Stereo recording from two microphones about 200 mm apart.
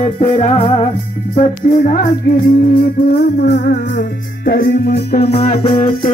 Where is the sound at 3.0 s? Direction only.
55° left (ahead or behind).